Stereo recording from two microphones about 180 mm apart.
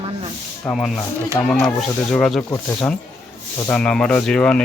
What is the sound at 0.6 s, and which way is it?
Speech, 5° left (ahead or behind).